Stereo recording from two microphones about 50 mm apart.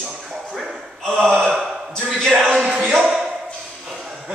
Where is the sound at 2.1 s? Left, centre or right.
Centre.